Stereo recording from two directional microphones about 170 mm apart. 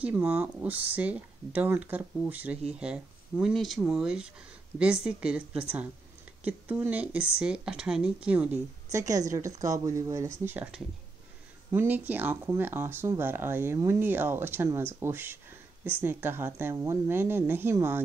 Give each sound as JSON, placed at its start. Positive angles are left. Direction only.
{"t": 0.0, "sound": "speech", "side_deg": -10}
{"t": 8.9, "sound": "speech", "side_deg": -20}